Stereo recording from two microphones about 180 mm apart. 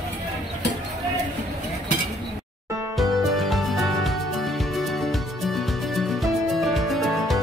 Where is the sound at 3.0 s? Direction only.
Centre (ahead or behind).